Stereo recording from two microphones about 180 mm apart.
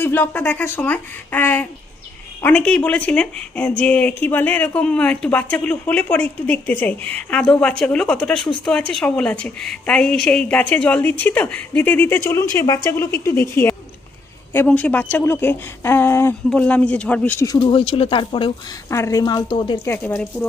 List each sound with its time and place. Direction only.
0.0 s a woman's voice: 10° left (ahead or behind)
17.6 s speech: 30° left (ahead or behind)
18.9 s speech: 15° left (ahead or behind)
19.8 s a woman's voice: 15° left (ahead or behind)